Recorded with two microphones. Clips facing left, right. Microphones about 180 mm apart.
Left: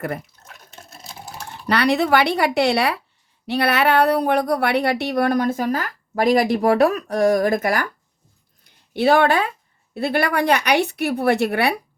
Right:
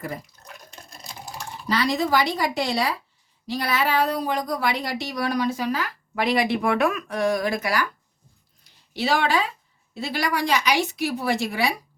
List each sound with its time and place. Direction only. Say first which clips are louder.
0.4 s water: even; centre (ahead or behind)
1.5 s a woman's voice: left 5 dB; 65° left (ahead or behind); by 7.9 s 50° left (ahead or behind)
8.9 s a woman's voice: left 7 dB; 55° left (ahead or behind)